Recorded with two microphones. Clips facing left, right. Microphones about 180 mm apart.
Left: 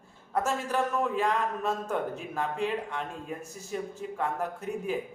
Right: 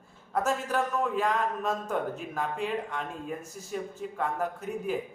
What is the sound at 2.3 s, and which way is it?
A man's voice, centre (ahead or behind).